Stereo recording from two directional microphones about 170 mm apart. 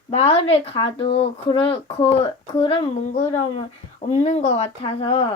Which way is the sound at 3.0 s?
45° left (ahead or behind).